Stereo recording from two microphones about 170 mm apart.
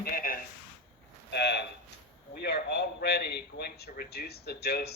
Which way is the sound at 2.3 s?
75° left (ahead or behind).